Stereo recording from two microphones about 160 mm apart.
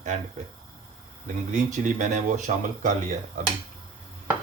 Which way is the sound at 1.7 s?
50° right (ahead or behind).